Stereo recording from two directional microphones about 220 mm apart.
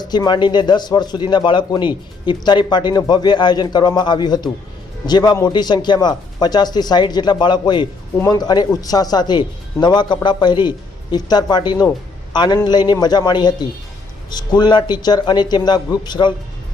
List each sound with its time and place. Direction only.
0.0 s a man's voice: 20° left (ahead or behind)